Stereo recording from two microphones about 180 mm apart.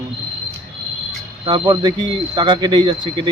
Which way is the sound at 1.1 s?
25° right (ahead or behind).